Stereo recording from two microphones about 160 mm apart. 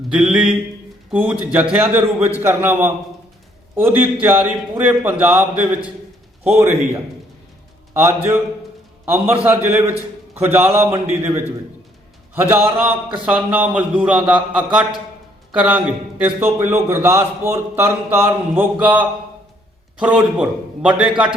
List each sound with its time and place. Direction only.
0.1 s a man's voice: 5° right (ahead or behind)
9.0 s speech: 10° right (ahead or behind)
20.0 s a man's voice: 5° right (ahead or behind)